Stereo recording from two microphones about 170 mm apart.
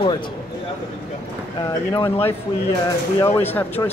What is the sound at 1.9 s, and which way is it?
Speech, 25° left (ahead or behind).